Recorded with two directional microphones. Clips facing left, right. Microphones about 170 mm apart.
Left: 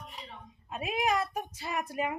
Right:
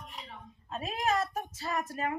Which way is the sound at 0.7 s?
15° left (ahead or behind).